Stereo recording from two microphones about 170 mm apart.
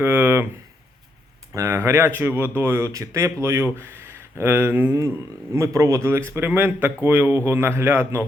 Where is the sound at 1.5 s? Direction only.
15° right (ahead or behind).